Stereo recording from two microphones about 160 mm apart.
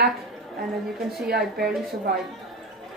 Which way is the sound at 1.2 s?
75° right (ahead or behind).